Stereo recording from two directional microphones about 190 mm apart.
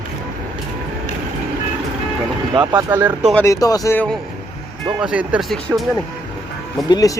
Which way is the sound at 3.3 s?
15° left (ahead or behind).